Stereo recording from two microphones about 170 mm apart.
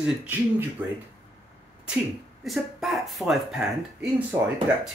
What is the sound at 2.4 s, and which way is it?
Speech, centre (ahead or behind).